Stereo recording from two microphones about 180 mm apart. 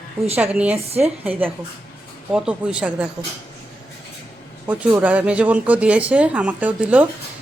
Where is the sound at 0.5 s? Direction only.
5° right (ahead or behind).